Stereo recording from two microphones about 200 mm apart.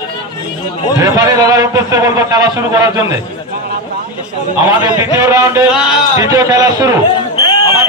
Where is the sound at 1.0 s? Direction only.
20° right (ahead or behind).